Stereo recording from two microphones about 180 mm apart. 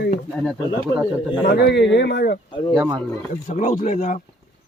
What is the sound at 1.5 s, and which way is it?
Speech, 70° left (ahead or behind).